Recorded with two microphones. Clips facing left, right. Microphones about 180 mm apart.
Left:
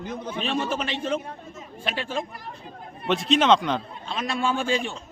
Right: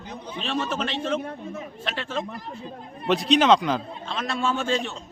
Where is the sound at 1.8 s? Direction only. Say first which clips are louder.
Left 2 dB; 10° left (ahead or behind).